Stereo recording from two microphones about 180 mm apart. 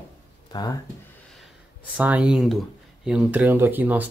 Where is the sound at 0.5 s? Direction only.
20° left (ahead or behind).